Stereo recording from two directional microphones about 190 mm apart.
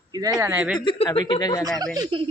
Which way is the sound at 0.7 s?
25° left (ahead or behind).